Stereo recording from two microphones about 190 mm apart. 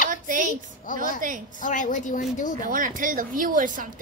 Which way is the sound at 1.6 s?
40° left (ahead or behind).